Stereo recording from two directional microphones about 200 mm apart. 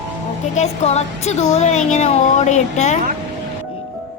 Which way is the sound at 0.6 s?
35° left (ahead or behind).